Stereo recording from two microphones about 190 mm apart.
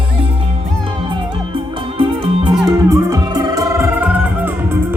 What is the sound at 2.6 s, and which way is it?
Music, 20° right (ahead or behind).